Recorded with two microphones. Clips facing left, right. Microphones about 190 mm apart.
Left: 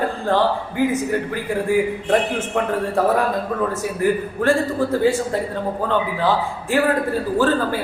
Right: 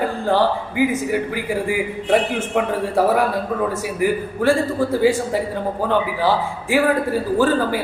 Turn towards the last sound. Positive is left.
turn(degrees=-10)  # may be behind; listen again after turning